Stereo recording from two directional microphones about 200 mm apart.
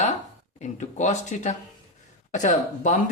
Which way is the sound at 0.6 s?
35° left (ahead or behind).